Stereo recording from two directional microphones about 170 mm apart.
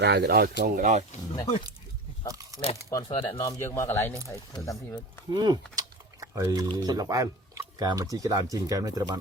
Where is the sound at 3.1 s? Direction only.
30° left (ahead or behind).